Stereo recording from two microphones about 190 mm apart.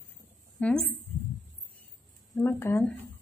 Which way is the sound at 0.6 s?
5° left (ahead or behind).